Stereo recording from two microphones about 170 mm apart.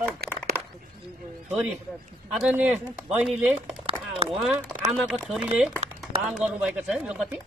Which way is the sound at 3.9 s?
35° right (ahead or behind).